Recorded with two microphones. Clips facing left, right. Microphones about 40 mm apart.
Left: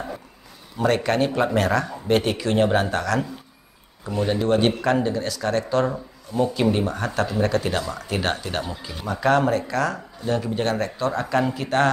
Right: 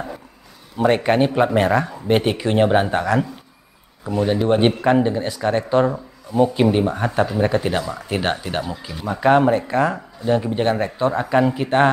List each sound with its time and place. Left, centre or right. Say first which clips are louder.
0.7 s a man's voice: right 4 dB; right; by 9.0 s centre
9.0 s a man's voice: right 4 dB; centre